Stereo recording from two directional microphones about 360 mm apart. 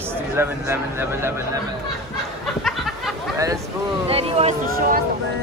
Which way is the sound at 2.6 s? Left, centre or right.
Centre.